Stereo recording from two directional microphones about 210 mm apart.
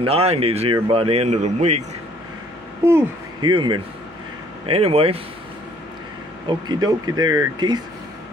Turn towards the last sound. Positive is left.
turn(degrees=-20)  # may be behind; listen again after turning